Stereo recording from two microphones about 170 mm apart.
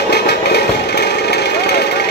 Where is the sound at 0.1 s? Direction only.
75° left (ahead or behind).